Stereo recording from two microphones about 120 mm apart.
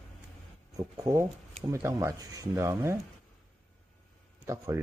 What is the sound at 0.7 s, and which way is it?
Speech, 30° right (ahead or behind).